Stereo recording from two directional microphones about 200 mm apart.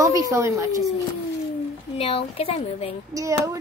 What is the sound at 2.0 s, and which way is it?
Speech, 30° left (ahead or behind).